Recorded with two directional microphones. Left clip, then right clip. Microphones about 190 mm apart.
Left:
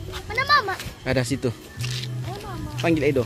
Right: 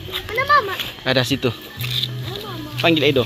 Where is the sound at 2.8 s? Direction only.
5° left (ahead or behind).